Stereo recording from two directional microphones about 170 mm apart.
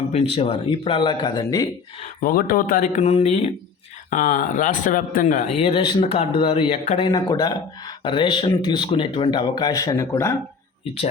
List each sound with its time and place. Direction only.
0.1 s speech: 35° left (ahead or behind)
2.2 s speech: 55° left (ahead or behind); by 3.5 s 35° left (ahead or behind)
4.1 s a man's voice: 50° left (ahead or behind)
7.1 s speech: 25° left (ahead or behind)